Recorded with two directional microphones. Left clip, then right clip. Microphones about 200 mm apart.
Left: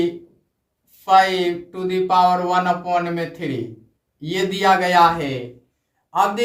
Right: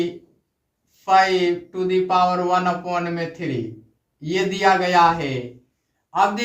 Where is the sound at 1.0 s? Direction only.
15° right (ahead or behind).